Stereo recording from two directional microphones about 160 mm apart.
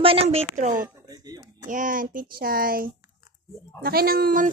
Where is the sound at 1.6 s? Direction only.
55° right (ahead or behind).